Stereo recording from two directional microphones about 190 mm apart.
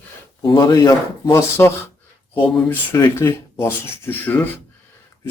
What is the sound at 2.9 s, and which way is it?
Speech, 15° left (ahead or behind).